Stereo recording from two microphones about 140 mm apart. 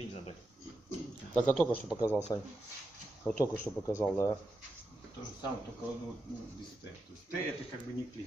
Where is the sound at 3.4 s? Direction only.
15° left (ahead or behind).